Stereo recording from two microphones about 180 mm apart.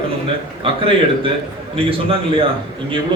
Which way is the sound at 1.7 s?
30° right (ahead or behind).